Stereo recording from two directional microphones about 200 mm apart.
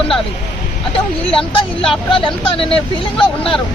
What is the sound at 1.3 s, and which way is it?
Speech, 25° left (ahead or behind).